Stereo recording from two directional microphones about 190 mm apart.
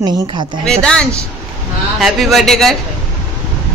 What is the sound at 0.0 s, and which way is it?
Speech, 25° right (ahead or behind).